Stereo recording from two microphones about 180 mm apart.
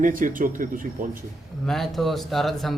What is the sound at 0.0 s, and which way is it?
Speech, 50° right (ahead or behind).